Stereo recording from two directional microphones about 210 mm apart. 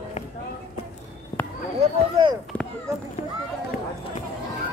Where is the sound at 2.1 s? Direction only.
20° right (ahead or behind).